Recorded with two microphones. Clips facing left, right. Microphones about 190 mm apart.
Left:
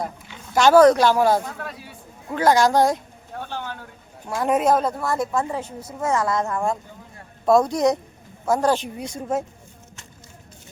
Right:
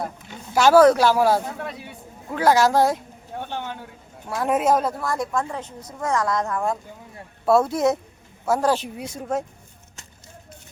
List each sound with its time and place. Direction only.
0.5 s a woman's voice: 5° right (ahead or behind)
1.5 s speech: 20° right (ahead or behind)
2.3 s a woman's voice: 5° right (ahead or behind)
3.3 s speech: 20° right (ahead or behind)
4.4 s a woman's voice: centre (ahead or behind)